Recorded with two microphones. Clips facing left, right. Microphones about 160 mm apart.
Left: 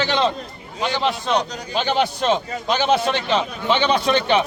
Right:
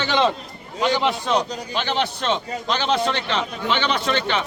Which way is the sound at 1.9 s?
15° left (ahead or behind).